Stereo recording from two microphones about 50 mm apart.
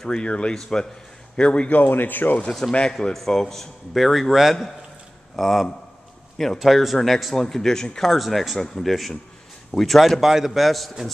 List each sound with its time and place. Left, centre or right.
0.1 s speech: left
0.6 s speech: centre
1.3 s speech: left
1.8 s speech: left
2.7 s speech: centre